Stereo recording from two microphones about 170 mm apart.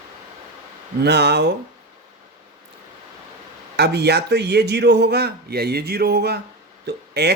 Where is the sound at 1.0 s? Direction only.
75° right (ahead or behind).